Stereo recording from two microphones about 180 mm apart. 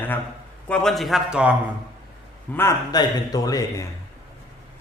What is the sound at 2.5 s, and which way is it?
A man's voice, 15° left (ahead or behind).